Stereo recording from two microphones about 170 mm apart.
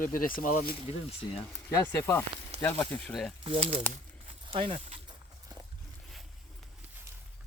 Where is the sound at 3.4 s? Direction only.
35° right (ahead or behind).